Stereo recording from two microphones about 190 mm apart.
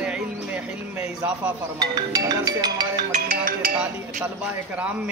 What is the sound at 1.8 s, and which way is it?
Speech, 20° right (ahead or behind).